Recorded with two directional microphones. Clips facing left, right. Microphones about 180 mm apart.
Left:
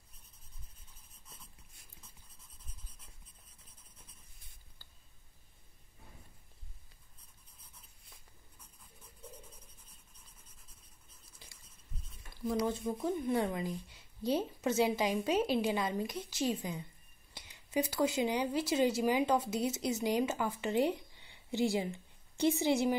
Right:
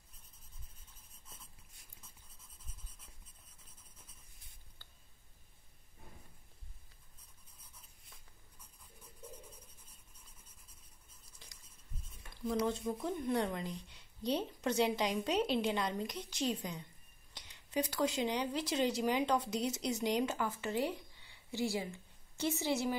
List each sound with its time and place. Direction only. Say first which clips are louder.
12.6 s a woman's voice: left 2 dB; 5° left (ahead or behind)